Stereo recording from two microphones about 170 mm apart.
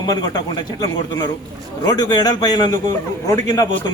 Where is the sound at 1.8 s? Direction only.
20° left (ahead or behind).